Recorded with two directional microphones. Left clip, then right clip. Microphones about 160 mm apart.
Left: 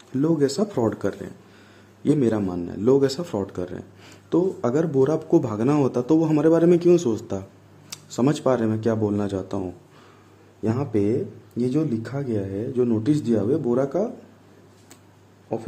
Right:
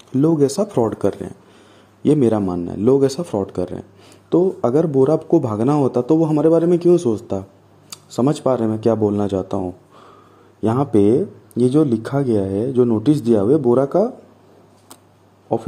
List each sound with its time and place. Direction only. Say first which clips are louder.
0.1 s speech: right 5 dB; 30° right (ahead or behind)
10.6 s speech: right 8 dB; 45° right (ahead or behind)